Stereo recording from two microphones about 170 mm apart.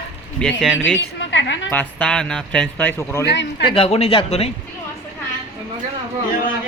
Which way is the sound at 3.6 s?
35° left (ahead or behind).